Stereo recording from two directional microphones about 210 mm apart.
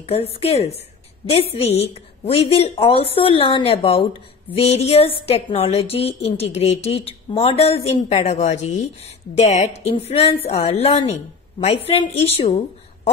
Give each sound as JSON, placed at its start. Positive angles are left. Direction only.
{"t": 0.0, "sound": "speech", "side_deg": 30}